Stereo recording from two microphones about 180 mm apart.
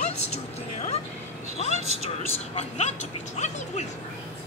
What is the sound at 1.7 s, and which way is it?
Speech, 35° right (ahead or behind).